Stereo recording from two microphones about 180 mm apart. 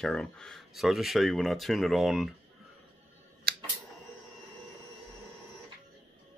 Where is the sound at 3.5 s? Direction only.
60° right (ahead or behind).